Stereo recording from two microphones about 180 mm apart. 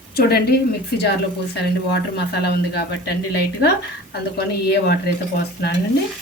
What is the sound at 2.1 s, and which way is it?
Speech, 65° left (ahead or behind).